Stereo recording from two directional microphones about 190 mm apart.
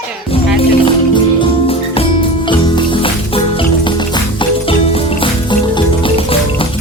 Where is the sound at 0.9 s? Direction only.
25° left (ahead or behind).